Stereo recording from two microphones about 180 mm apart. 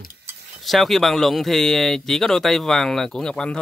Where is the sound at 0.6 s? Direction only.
Centre (ahead or behind).